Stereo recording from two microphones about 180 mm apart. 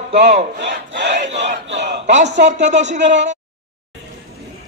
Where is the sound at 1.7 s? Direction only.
75° right (ahead or behind).